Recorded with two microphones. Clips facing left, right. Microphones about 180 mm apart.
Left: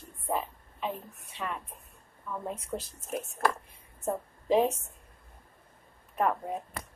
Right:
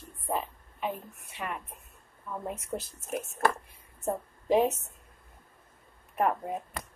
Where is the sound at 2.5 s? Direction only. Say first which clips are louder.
Even; 5° right (ahead or behind).